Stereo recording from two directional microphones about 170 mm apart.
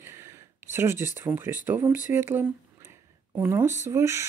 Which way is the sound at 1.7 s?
10° right (ahead or behind).